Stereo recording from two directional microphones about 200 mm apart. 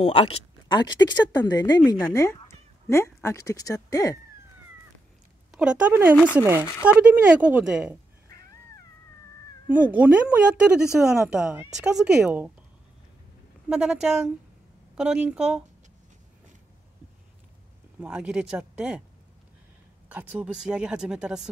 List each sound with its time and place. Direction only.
0.0 s speech: 30° left (ahead or behind)
5.5 s a woman's voice: 5° right (ahead or behind)
6.6 s speech: 10° left (ahead or behind)
6.9 s a woman's voice: 5° right (ahead or behind)
9.7 s speech: 5° right (ahead or behind)
13.7 s speech: 5° right (ahead or behind)
18.0 s speech: 5° right (ahead or behind)
20.1 s speech: 10° right (ahead or behind)